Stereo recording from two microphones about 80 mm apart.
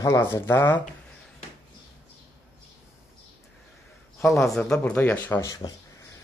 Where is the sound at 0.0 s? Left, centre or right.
Left.